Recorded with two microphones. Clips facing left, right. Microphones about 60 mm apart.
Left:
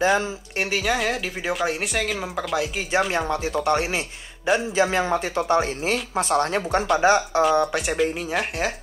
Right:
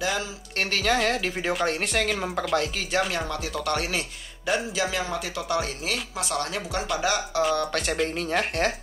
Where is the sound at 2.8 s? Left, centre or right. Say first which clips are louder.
Left 3 dB; centre.